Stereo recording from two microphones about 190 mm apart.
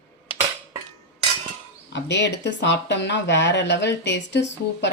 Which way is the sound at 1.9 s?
65° left (ahead or behind).